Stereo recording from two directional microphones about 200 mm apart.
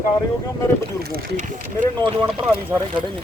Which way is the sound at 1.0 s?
45° right (ahead or behind).